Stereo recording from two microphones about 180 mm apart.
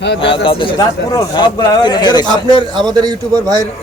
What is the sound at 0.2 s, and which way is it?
Speech, 30° left (ahead or behind).